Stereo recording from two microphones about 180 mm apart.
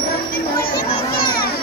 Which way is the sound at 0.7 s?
55° left (ahead or behind).